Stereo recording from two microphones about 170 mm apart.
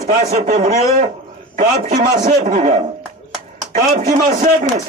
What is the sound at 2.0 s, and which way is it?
Speech, 45° right (ahead or behind).